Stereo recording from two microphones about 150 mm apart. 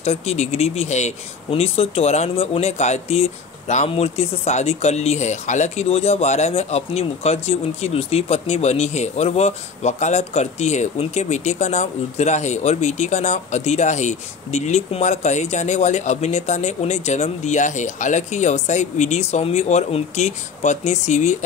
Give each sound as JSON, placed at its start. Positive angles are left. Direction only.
{"t": 0.0, "sound": "speech", "side_deg": 45}